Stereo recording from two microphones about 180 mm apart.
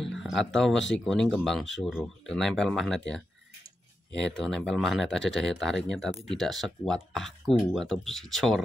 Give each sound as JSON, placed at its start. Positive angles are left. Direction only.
{"t": 0.0, "sound": "speech", "side_deg": 0}
{"t": 4.2, "sound": "speech", "side_deg": 5}